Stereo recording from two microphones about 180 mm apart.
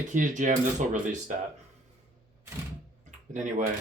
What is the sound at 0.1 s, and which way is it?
Speech, 45° right (ahead or behind).